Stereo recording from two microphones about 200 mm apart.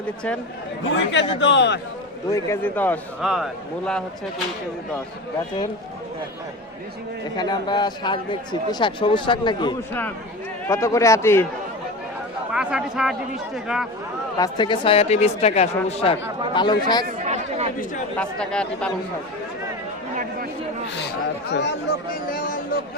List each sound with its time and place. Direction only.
0.9 s a man's voice: 65° left (ahead or behind)
2.3 s a man's voice: 10° left (ahead or behind)
3.2 s a man's voice: centre (ahead or behind)
7.3 s a man's voice: 20° left (ahead or behind)
12.5 s a man's voice: 5° right (ahead or behind)
14.3 s speech: 20° left (ahead or behind)
17.2 s a sound: 35° right (ahead or behind)
18.2 s a man's voice: 5° left (ahead or behind)
21.5 s a man's voice: 60° left (ahead or behind)
22.3 s speech: 45° left (ahead or behind)